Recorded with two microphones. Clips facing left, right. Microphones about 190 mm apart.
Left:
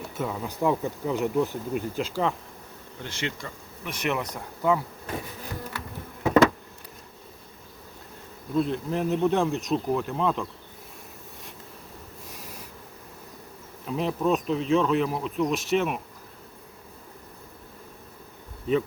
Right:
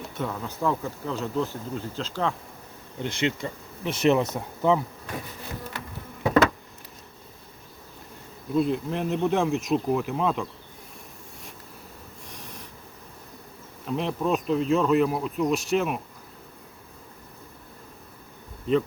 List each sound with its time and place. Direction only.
0.1 s speech: 5° left (ahead or behind)
3.0 s speech: 20° right (ahead or behind)
8.5 s speech: centre (ahead or behind)
12.3 s a sound: 5° left (ahead or behind)
13.8 s speech: centre (ahead or behind)
18.7 s speech: 5° left (ahead or behind)